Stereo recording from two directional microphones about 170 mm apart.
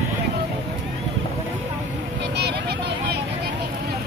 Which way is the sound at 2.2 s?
75° right (ahead or behind).